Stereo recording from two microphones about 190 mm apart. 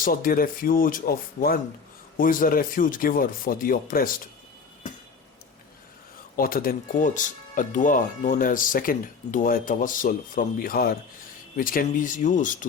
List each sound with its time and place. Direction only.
0.0 s speech: 50° left (ahead or behind)
6.3 s speech: 50° left (ahead or behind)